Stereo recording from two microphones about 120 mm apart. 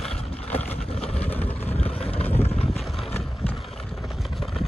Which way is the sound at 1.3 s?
15° left (ahead or behind).